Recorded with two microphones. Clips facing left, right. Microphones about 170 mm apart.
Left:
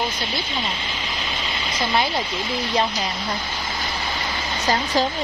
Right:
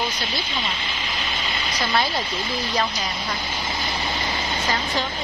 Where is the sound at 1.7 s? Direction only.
25° left (ahead or behind).